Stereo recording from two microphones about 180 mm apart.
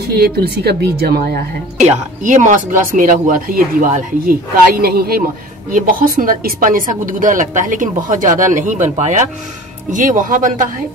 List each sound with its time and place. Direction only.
0.1 s a woman's voice: 65° right (ahead or behind)
1.8 s a woman's voice: 40° right (ahead or behind)